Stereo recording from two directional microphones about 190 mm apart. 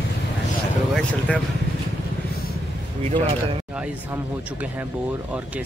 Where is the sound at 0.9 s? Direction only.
5° left (ahead or behind).